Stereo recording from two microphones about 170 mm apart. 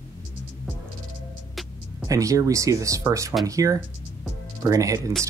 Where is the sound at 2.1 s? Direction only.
20° right (ahead or behind).